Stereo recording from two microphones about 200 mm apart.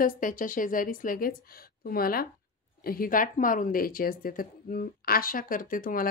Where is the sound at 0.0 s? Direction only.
40° left (ahead or behind).